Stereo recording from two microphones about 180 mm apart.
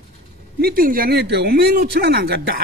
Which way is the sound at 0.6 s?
55° right (ahead or behind).